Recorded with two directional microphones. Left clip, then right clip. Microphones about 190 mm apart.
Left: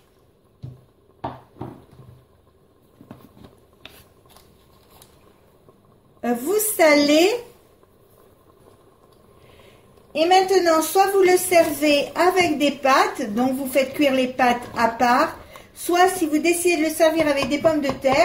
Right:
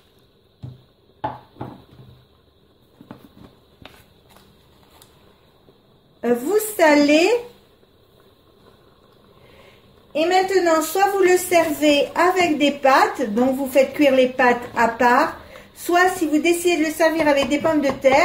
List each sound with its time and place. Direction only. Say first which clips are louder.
6.2 s a woman's voice: right 3 dB; centre (ahead or behind)
10.1 s a woman's voice: left 1 dB; 15° right (ahead or behind)